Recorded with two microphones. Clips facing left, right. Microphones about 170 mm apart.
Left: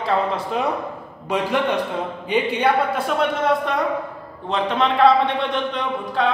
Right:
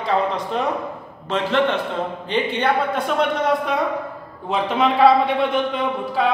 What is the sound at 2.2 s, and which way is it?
Speech, 10° left (ahead or behind).